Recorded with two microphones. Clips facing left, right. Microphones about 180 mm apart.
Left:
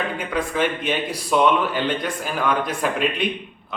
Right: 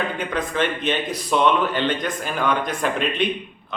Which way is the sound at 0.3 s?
10° left (ahead or behind).